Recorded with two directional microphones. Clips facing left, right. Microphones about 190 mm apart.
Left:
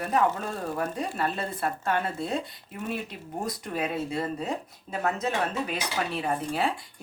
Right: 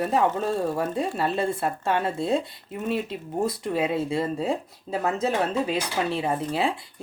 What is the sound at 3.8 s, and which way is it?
Speech, 30° right (ahead or behind).